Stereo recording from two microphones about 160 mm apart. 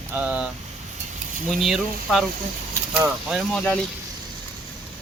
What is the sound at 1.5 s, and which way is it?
Speech, centre (ahead or behind).